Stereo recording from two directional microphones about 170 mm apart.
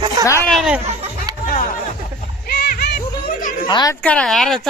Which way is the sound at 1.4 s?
55° left (ahead or behind).